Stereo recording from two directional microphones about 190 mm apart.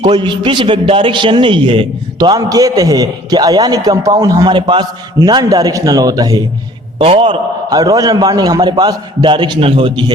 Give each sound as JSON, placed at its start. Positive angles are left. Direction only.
{"t": 0.0, "sound": "a man's voice", "side_deg": -25}